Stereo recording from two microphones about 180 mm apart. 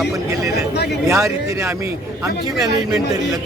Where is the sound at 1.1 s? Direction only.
15° right (ahead or behind).